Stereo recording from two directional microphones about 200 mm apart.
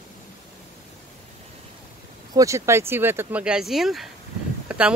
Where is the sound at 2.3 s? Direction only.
15° right (ahead or behind).